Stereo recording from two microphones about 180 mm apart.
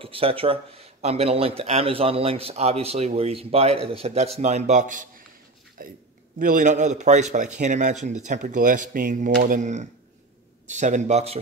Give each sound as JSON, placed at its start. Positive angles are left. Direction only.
{"t": 0.0, "sound": "a man's voice", "side_deg": -30}